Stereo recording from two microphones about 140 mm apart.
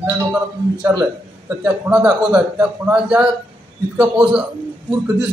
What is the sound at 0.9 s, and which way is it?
Speech, 25° right (ahead or behind).